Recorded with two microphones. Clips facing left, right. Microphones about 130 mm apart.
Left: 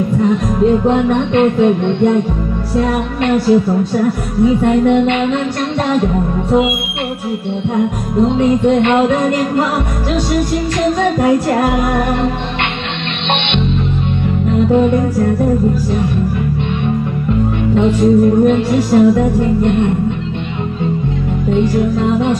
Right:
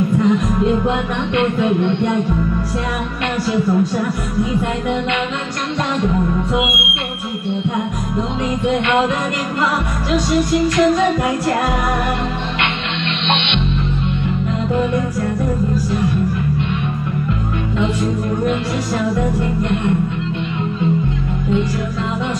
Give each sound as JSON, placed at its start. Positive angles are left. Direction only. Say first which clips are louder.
{"t": 0.8, "sound": "music", "louder": "left 7 dB", "side_deg": 40}
{"t": 4.6, "sound": "music", "louder": "left 8 dB", "side_deg": 45}
{"t": 8.4, "sound": "music", "louder": "left 6 dB", "side_deg": 40}
{"t": 18.5, "sound": "music", "louder": "left 8 dB", "side_deg": 40}